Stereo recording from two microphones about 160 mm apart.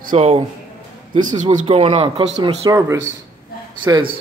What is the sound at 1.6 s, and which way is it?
Speech, 40° right (ahead or behind).